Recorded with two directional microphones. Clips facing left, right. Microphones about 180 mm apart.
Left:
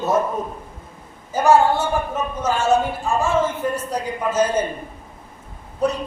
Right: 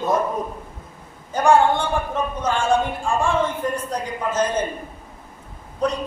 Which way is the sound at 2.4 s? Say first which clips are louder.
Left 2 dB; 5° left (ahead or behind).